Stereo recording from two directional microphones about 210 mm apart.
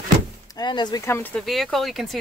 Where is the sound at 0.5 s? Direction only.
20° left (ahead or behind).